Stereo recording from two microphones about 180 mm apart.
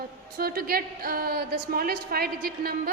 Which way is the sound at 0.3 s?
55° right (ahead or behind).